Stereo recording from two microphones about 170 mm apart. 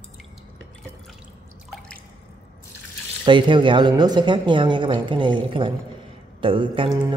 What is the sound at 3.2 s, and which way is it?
A man's voice, 30° right (ahead or behind).